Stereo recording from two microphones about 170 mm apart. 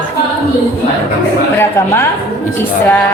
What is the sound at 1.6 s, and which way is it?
Speech, 15° left (ahead or behind).